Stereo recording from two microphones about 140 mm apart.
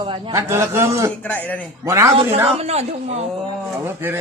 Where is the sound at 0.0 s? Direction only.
35° right (ahead or behind).